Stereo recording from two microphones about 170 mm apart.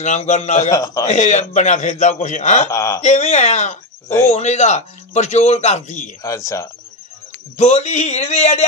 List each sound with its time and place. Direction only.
0.0 s a man's voice: 45° left (ahead or behind)
0.7 s speech: 20° left (ahead or behind)
1.0 s a man's voice: 45° left (ahead or behind)
2.7 s speech: 20° left (ahead or behind)
3.0 s a man's voice: 40° left (ahead or behind)
6.2 s speech: 20° left (ahead or behind)
7.5 s a man's voice: 40° left (ahead or behind)